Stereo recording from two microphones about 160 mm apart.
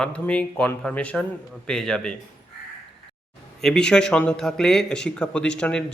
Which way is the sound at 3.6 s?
5° left (ahead or behind).